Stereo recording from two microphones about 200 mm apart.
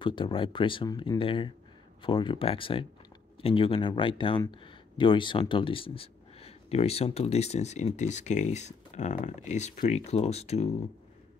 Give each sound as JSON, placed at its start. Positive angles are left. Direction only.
{"t": 0.0, "sound": "speech", "side_deg": 25}